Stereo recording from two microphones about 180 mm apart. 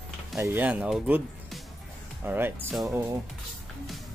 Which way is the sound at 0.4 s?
10° right (ahead or behind).